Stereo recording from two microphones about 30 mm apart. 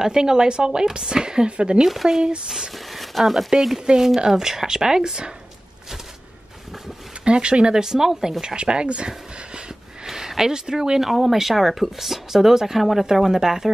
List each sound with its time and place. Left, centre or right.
0.0 s speech: right
2.7 s a sound: centre
3.4 s speech: centre
7.2 s speech: right
7.7 s speech: centre
8.5 s speech: right
10.0 s speech: centre